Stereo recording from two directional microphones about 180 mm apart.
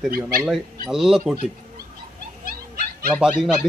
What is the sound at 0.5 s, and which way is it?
Speech, 5° right (ahead or behind).